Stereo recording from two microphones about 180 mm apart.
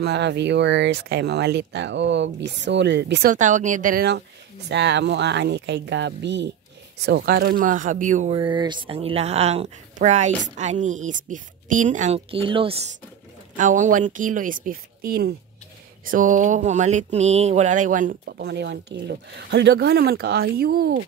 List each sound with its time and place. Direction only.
0.0 s speech: 70° right (ahead or behind)
3.3 s speech: 45° right (ahead or behind)
4.6 s speech: 75° right (ahead or behind); by 8.4 s 45° right (ahead or behind)
8.4 s speech: 25° right (ahead or behind)
13.6 s speech: 45° right (ahead or behind)
16.1 s speech: 45° right (ahead or behind)